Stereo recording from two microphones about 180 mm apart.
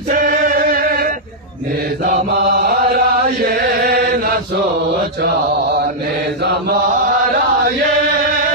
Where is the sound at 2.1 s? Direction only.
60° right (ahead or behind).